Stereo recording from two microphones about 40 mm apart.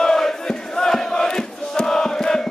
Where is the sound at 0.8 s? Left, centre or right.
Centre.